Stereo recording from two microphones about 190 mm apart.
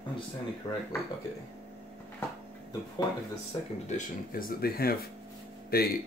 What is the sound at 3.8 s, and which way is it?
Speech, 45° left (ahead or behind).